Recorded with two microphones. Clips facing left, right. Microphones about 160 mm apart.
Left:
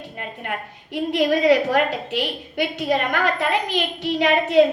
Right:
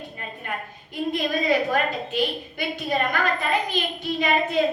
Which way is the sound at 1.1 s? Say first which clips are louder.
Left 7 dB; 80° left.